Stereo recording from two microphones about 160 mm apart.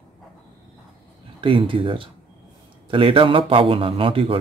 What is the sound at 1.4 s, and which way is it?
Speech, 30° right (ahead or behind).